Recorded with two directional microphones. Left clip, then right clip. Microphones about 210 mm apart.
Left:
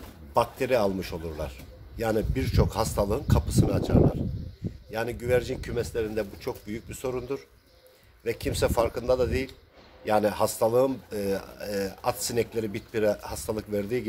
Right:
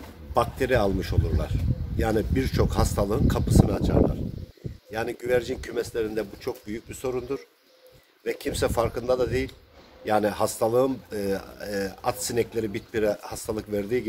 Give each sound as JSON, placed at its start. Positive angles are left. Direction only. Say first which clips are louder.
{"t": 0.3, "sound": "speech", "louder": "right 1 dB", "side_deg": 15}
{"t": 4.9, "sound": "speech", "louder": "right 1 dB", "side_deg": 15}